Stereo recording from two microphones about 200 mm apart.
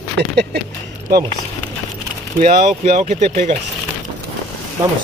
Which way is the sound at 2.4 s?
35° right (ahead or behind).